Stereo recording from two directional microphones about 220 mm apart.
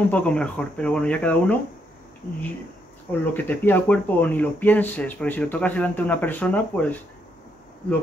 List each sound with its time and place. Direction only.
0.1 s speech: 5° left (ahead or behind)
3.1 s speech: 10° left (ahead or behind)